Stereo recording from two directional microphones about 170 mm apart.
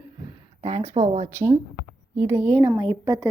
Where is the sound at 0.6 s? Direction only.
40° right (ahead or behind).